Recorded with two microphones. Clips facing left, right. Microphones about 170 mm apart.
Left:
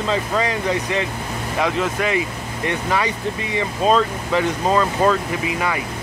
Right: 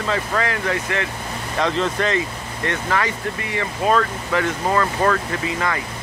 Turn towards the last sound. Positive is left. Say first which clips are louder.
# left 1 dB
turn(degrees=15)  # may be behind; listen again after turning